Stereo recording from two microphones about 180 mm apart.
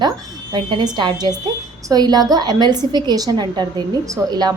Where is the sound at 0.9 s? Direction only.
25° right (ahead or behind).